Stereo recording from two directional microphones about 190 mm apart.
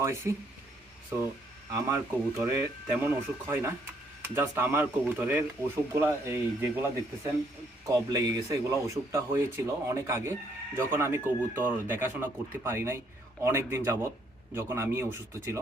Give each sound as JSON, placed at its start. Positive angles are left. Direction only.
{"t": 0.0, "sound": "speech", "side_deg": -15}
{"t": 1.7, "sound": "speech", "side_deg": -15}
{"t": 7.9, "sound": "speech", "side_deg": -20}